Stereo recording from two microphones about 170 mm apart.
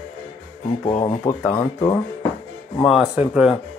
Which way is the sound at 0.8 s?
30° left (ahead or behind).